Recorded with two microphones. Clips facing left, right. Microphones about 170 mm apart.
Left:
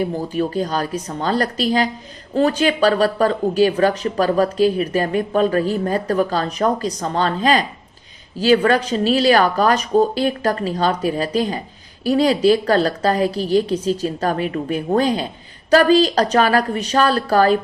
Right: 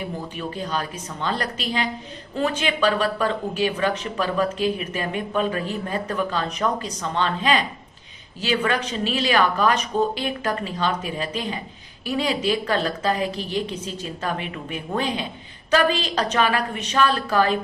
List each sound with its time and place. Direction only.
0.3 s speech: 40° left (ahead or behind)